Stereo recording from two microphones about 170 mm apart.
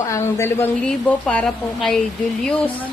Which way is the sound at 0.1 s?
15° left (ahead or behind).